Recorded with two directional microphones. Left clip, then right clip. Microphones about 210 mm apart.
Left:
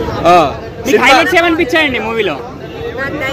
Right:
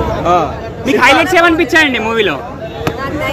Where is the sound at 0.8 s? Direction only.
10° right (ahead or behind).